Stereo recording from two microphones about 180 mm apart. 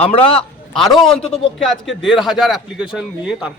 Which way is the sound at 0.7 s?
Centre (ahead or behind).